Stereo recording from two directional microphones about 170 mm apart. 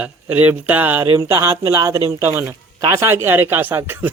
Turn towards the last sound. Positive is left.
turn(degrees=-10)  # may be behind; listen again after turning